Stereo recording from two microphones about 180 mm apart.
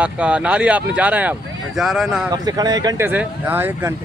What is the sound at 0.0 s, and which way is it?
Speech, 5° right (ahead or behind).